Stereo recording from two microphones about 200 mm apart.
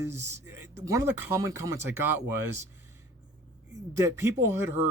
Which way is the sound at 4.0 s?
15° right (ahead or behind).